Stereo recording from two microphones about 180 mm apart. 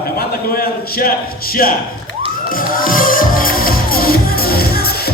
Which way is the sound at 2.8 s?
50° left (ahead or behind).